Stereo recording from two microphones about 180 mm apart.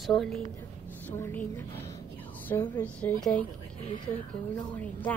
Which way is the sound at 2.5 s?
10° left (ahead or behind).